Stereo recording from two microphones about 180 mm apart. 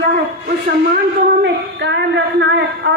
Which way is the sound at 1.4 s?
80° right.